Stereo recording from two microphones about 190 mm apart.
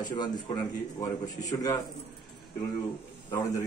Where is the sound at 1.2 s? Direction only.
20° left (ahead or behind).